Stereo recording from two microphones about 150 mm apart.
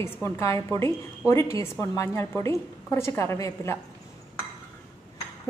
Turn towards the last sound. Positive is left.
turn(degrees=20)  # may be behind; listen again after turning